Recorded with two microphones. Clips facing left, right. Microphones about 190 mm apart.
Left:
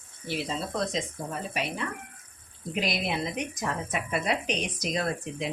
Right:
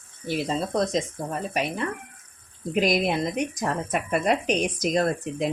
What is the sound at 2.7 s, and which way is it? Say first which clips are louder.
Speech: right 7 dB; 45° right (ahead or behind).